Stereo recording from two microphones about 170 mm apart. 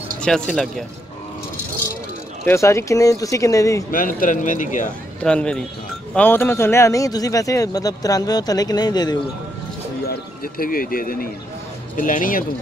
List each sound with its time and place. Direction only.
0.2 s speech: 5° left (ahead or behind)
2.4 s a man's voice: 15° left (ahead or behind)
3.9 s speech: 55° left (ahead or behind)
5.2 s a man's voice: 5° left (ahead or behind); by 9.2 s 25° left (ahead or behind)
10.0 s speech: 60° left (ahead or behind)